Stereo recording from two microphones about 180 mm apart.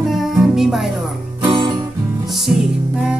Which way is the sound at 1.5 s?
25° right (ahead or behind).